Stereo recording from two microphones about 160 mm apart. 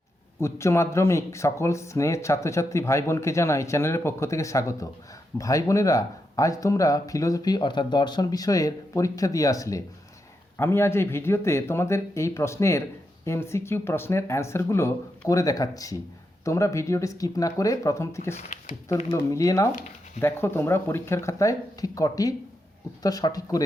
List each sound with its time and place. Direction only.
0.3 s speech: 15° left (ahead or behind)
18.3 s speech: 45° left (ahead or behind)
19.1 s speech: 20° left (ahead or behind)